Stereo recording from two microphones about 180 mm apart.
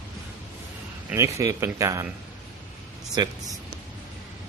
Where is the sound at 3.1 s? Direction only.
20° right (ahead or behind).